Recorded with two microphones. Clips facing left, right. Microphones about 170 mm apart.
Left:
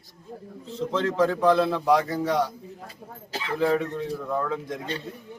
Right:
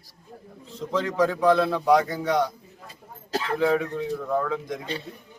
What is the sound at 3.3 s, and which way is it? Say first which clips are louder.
Speech: right 4 dB; 40° right (ahead or behind).